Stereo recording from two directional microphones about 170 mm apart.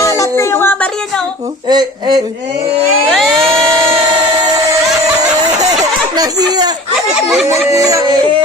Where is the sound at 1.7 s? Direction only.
25° right (ahead or behind).